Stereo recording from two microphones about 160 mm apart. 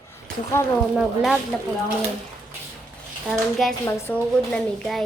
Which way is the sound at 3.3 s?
Centre (ahead or behind).